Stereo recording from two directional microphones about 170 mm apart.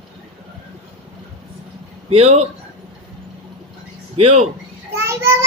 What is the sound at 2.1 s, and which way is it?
Speech, 35° right (ahead or behind).